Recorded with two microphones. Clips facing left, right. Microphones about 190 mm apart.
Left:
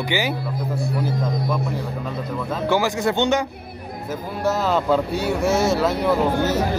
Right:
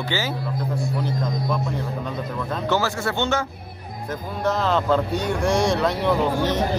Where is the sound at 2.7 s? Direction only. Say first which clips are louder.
Left 5 dB; 15° left (ahead or behind).